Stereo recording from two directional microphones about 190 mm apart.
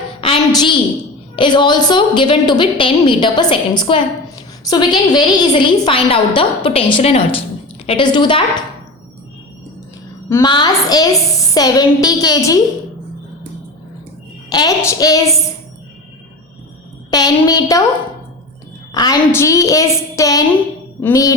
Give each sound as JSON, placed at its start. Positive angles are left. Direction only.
{"t": 0.2, "sound": "a sound", "side_deg": 25}
{"t": 1.4, "sound": "a woman's voice", "side_deg": 25}
{"t": 10.2, "sound": "a woman's voice", "side_deg": 20}
{"t": 14.5, "sound": "a woman's voice", "side_deg": 20}
{"t": 17.1, "sound": "a woman's voice", "side_deg": 20}
{"t": 18.9, "sound": "a woman's voice", "side_deg": 20}